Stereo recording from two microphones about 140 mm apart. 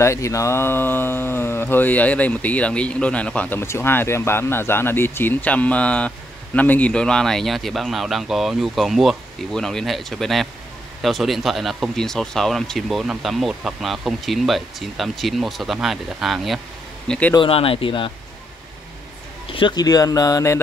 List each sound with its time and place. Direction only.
0.0 s speech: 20° left (ahead or behind); by 16.5 s centre (ahead or behind)
17.3 s speech: 40° left (ahead or behind)
19.5 s speech: 35° left (ahead or behind)